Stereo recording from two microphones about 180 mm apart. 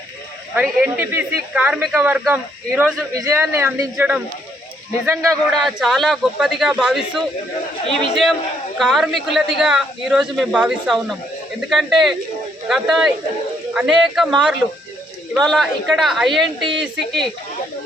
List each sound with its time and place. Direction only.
0.5 s speech: 10° right (ahead or behind)
5.6 s speech: centre (ahead or behind)